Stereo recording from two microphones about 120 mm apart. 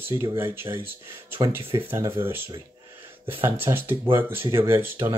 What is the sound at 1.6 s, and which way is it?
Speech, 50° right (ahead or behind).